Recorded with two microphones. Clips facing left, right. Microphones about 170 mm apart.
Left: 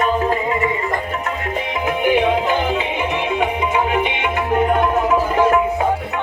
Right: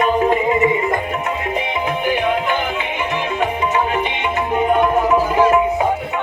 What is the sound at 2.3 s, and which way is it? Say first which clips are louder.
Music: left 2 dB; 30° left (ahead or behind).